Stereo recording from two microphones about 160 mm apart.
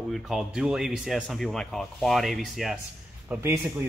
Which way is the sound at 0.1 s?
5° right (ahead or behind).